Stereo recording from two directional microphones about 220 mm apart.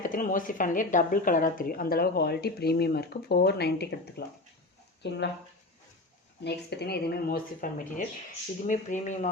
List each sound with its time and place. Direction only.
0.0 s a woman's voice: 40° left (ahead or behind)
6.4 s a woman's voice: 50° left (ahead or behind)